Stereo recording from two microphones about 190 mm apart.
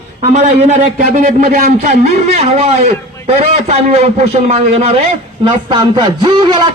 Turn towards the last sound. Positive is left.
turn(degrees=-25)  # may be behind; listen again after turning